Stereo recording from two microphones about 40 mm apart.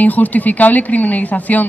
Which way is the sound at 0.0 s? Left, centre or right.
Left.